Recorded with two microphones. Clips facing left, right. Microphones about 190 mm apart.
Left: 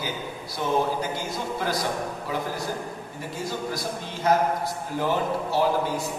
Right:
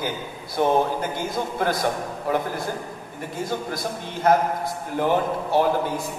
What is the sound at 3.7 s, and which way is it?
A man's voice, 55° right (ahead or behind).